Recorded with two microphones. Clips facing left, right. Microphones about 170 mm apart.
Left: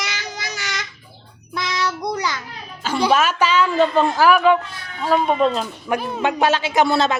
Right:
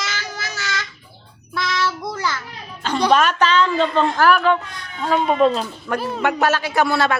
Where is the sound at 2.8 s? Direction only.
5° left (ahead or behind).